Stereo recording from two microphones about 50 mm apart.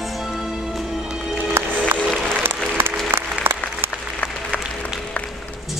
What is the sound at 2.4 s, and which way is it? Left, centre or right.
Applause, right.